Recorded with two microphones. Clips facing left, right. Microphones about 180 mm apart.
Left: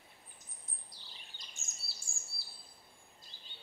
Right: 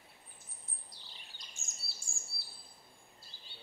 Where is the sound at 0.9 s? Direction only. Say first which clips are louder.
Even; centre (ahead or behind).